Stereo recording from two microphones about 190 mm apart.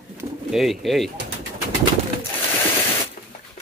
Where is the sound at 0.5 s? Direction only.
Centre (ahead or behind).